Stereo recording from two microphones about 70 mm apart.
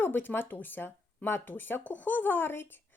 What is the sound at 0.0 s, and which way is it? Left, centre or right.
Speech, left.